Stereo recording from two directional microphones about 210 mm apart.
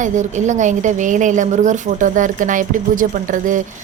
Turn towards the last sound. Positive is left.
turn(degrees=-40)  # may be behind; listen again after turning